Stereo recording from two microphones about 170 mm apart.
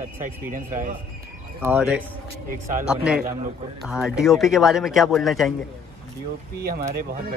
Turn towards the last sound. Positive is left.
turn(degrees=-60)  # may be behind; listen again after turning